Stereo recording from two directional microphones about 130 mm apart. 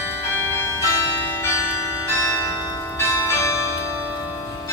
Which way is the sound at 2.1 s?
20° left (ahead or behind).